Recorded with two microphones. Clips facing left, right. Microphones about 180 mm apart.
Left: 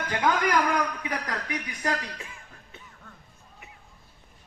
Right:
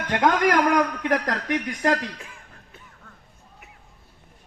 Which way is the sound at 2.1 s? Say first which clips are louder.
Even; centre (ahead or behind).